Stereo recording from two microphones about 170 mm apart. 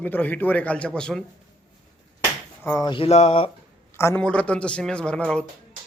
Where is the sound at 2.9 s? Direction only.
35° left (ahead or behind).